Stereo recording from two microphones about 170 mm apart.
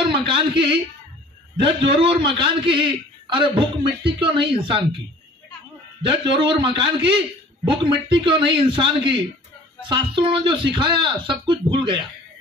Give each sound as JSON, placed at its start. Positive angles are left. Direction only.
{"t": 0.1, "sound": "speech", "side_deg": -30}
{"t": 1.8, "sound": "a man's voice", "side_deg": -30}
{"t": 6.0, "sound": "a man's voice", "side_deg": -30}